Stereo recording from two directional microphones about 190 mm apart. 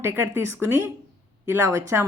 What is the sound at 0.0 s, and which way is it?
A woman's voice, 10° right (ahead or behind).